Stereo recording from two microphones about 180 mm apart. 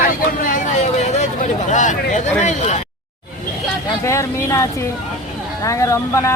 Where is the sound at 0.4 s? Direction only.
45° left (ahead or behind).